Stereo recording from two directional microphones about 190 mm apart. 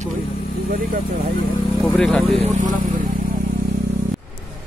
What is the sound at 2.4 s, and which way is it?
Speech, 35° right (ahead or behind).